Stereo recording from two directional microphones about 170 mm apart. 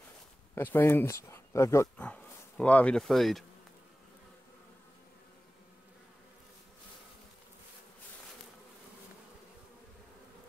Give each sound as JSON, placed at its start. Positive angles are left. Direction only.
{"t": 0.6, "sound": "speech", "side_deg": 10}